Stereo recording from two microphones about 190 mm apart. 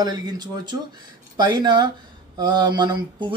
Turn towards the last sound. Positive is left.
turn(degrees=-25)  # may be behind; listen again after turning